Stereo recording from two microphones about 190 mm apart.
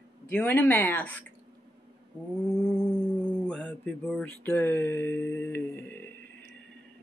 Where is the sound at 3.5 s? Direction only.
5° left (ahead or behind).